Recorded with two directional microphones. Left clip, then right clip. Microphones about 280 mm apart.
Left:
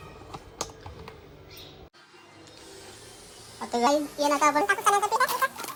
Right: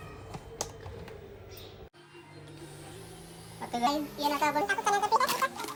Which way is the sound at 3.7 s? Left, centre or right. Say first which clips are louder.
Left 6 dB; centre.